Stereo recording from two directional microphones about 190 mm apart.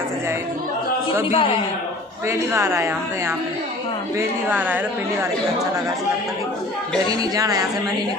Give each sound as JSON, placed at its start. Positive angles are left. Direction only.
{"t": 1.3, "sound": "a man's voice", "side_deg": 30}
{"t": 2.2, "sound": "a woman's voice", "side_deg": -15}
{"t": 4.5, "sound": "a woman's voice", "side_deg": -10}
{"t": 7.1, "sound": "speech", "side_deg": -20}